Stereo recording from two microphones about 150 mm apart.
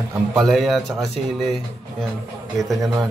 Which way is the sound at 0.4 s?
Centre (ahead or behind).